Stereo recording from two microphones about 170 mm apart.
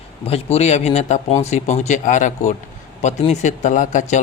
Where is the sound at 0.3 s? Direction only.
35° left (ahead or behind).